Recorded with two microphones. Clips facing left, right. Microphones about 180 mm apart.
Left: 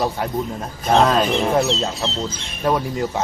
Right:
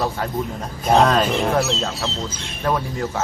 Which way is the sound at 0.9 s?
Centre (ahead or behind).